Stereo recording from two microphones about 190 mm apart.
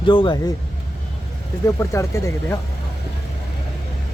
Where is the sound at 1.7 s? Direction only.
15° left (ahead or behind).